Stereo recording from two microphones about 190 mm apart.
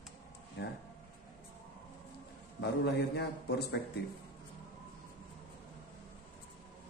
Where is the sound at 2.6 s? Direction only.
65° left (ahead or behind).